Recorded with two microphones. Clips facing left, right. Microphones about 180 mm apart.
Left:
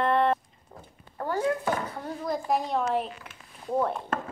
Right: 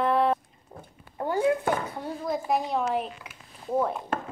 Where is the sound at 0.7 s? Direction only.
20° right (ahead or behind).